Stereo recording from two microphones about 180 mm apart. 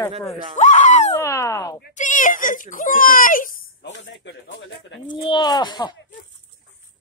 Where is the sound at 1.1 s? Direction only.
15° left (ahead or behind).